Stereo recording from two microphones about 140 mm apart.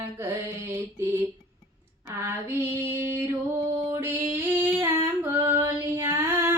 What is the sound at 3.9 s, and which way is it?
Female singing, 15° right (ahead or behind).